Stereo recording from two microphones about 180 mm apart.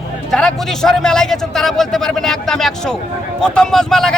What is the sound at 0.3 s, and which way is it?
A man's voice, 5° left (ahead or behind).